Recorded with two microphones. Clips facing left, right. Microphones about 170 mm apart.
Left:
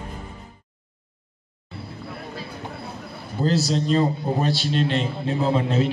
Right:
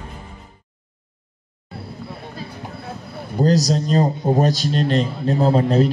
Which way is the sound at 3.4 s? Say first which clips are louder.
Right 4 dB; 40° right (ahead or behind).